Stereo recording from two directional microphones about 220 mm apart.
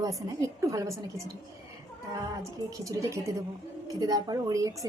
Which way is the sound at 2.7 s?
15° right (ahead or behind).